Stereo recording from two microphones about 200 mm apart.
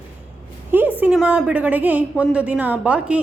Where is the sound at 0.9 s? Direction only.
5° right (ahead or behind).